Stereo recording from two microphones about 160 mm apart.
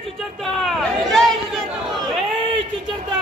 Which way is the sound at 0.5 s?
Centre (ahead or behind).